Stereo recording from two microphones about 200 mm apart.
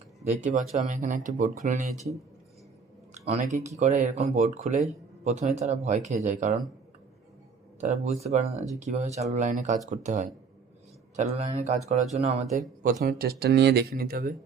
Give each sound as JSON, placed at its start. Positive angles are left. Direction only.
{"t": 0.3, "sound": "speech", "side_deg": -35}
{"t": 3.2, "sound": "speech", "side_deg": -35}
{"t": 7.8, "sound": "speech", "side_deg": -35}